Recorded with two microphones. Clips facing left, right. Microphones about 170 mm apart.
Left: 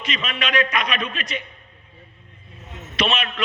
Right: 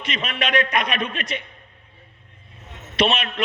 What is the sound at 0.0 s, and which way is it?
A man's voice, 55° right (ahead or behind).